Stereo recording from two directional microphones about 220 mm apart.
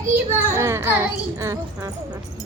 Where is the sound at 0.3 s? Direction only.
10° right (ahead or behind).